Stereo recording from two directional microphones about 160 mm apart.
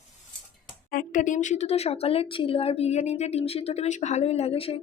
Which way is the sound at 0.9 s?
60° left (ahead or behind).